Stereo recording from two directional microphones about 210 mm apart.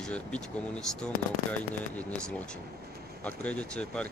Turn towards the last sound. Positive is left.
turn(degrees=5)  # may be behind; listen again after turning